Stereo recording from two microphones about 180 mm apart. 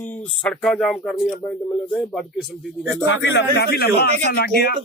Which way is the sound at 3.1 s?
85° left.